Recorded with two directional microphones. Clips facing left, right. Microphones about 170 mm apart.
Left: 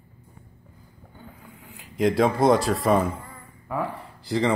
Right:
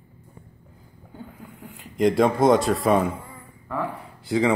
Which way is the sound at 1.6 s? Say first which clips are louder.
Right 2 dB; centre (ahead or behind).